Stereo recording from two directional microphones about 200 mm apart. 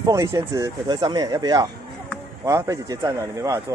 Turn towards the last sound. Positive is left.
turn(degrees=-15)  # may be behind; listen again after turning